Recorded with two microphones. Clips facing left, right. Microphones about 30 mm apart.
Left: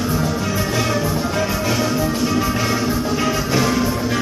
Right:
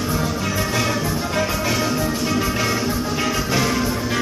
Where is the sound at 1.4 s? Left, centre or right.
Centre.